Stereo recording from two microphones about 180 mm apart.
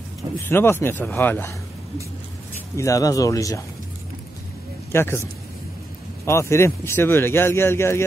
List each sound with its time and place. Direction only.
0.5 s speech: 10° left (ahead or behind)
2.7 s speech: 15° left (ahead or behind)
4.9 s speech: 15° left (ahead or behind)